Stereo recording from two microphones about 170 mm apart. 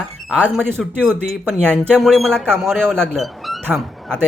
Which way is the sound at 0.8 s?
5° left (ahead or behind).